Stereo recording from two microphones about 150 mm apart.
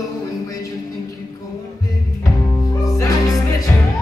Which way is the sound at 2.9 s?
20° left (ahead or behind).